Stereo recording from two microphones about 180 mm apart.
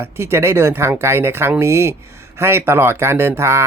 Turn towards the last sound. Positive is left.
turn(degrees=-15)  # may be behind; listen again after turning